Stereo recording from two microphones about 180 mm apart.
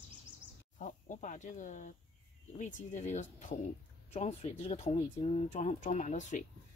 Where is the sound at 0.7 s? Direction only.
45° left (ahead or behind).